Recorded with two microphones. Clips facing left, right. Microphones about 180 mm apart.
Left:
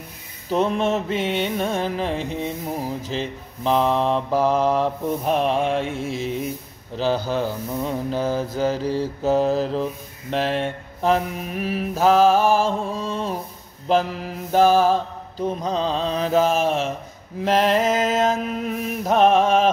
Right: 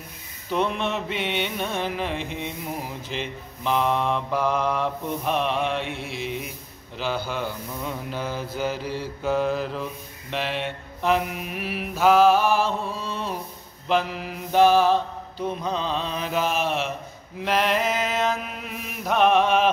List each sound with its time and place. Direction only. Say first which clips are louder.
0.5 s mantra: left 5 dB; 40° left (ahead or behind)